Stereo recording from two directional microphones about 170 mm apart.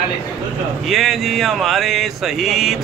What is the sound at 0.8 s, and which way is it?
Speech, centre (ahead or behind).